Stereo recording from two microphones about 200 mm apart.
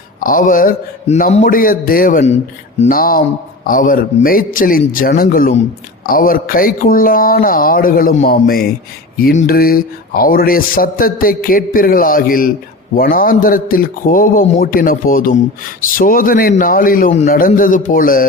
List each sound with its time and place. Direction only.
0.2 s speech: 45° left (ahead or behind)